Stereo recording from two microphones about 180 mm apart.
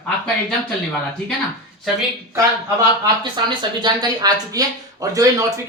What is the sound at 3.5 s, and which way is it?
Speech, 25° right (ahead or behind).